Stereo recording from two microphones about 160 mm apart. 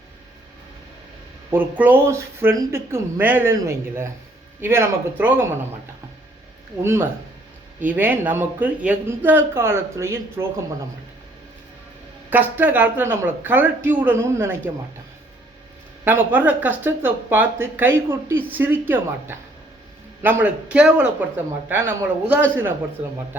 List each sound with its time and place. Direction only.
1.5 s speech: 10° right (ahead or behind)
6.8 s speech: 15° right (ahead or behind)
12.3 s speech: 10° right (ahead or behind)
16.0 s speech: 10° right (ahead or behind)